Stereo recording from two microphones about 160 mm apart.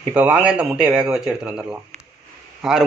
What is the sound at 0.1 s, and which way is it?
Speech, 10° right (ahead or behind).